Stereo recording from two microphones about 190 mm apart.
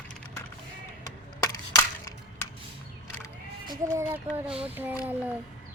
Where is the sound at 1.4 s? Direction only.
15° left (ahead or behind).